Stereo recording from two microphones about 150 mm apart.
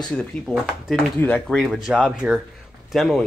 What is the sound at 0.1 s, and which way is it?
Speech, 5° left (ahead or behind).